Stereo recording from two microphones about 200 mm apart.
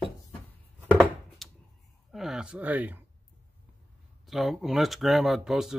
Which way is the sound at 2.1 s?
Centre (ahead or behind).